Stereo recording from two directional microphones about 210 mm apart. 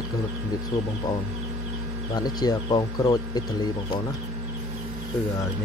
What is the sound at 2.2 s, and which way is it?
Speech, 20° left (ahead or behind).